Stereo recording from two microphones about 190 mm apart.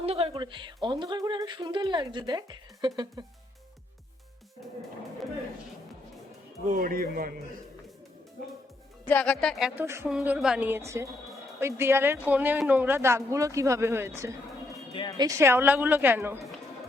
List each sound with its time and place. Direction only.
0.0 s speech: 30° right (ahead or behind)
6.7 s a man's voice: 50° right (ahead or behind)
9.0 s a woman's voice: 5° left (ahead or behind); by 16.4 s 10° right (ahead or behind)